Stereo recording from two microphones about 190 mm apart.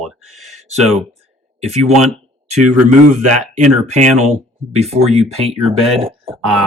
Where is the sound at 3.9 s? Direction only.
40° right (ahead or behind).